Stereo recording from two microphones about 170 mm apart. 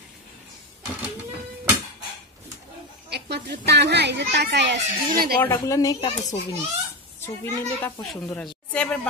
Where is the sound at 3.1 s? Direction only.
75° right (ahead or behind).